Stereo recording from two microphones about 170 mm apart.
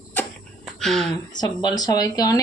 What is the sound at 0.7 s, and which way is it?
Speech, centre (ahead or behind).